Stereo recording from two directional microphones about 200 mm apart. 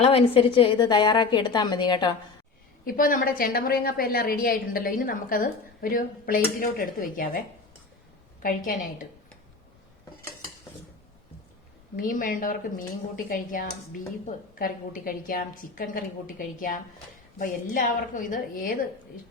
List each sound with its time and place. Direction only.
0.0 s a woman's voice: 30° left (ahead or behind)
2.8 s a woman's voice: 45° left (ahead or behind)
11.9 s a woman's voice: 45° left (ahead or behind)